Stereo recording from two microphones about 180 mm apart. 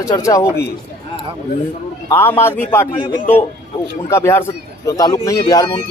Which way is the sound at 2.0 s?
15° left (ahead or behind).